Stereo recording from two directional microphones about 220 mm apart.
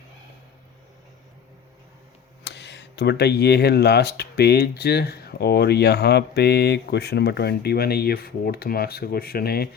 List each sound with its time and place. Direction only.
2.4 s speech: 50° left (ahead or behind)